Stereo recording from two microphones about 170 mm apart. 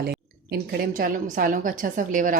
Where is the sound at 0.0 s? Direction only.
70° right (ahead or behind).